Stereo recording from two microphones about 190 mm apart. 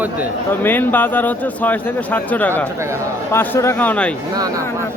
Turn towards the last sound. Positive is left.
turn(degrees=-20)  # may be behind; listen again after turning